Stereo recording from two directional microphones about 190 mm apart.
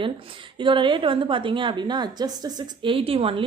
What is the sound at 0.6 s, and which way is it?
A woman's voice, 25° right (ahead or behind).